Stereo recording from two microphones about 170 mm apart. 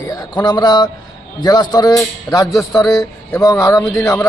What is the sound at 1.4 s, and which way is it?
A man's voice, 25° left (ahead or behind).